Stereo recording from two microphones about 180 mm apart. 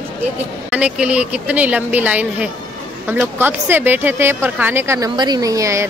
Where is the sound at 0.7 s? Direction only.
5° right (ahead or behind).